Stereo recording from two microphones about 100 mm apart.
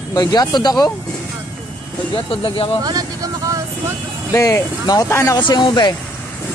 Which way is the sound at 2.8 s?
40° right (ahead or behind).